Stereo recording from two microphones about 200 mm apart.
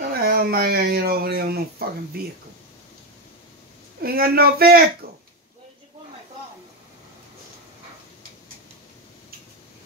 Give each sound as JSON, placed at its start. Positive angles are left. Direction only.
{"t": 0.2, "sound": "speech", "side_deg": -50}
{"t": 4.0, "sound": "speech", "side_deg": -50}